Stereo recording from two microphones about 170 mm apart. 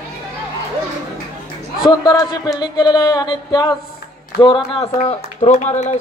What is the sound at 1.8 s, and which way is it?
Speech, 25° left (ahead or behind).